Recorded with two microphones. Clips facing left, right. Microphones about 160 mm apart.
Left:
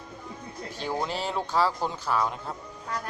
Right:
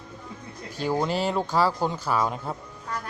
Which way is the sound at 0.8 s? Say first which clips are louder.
Right 5 dB; 5° right (ahead or behind).